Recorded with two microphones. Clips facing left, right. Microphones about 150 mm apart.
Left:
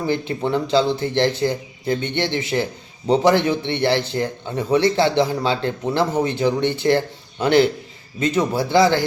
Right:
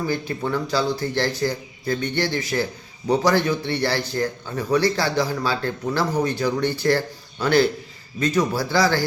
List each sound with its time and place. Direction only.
0.0 s a man's voice: 20° left (ahead or behind)